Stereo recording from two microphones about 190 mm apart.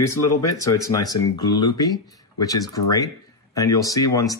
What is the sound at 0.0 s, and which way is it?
Speech, 15° left (ahead or behind).